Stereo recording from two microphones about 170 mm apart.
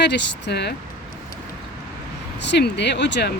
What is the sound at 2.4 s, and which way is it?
Speech, 90° left.